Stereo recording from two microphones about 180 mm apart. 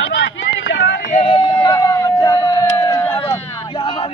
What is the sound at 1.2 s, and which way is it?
Speech, 25° left (ahead or behind).